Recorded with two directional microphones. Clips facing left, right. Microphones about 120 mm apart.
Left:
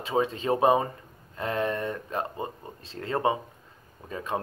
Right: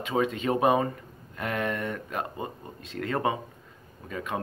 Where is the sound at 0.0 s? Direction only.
30° left (ahead or behind).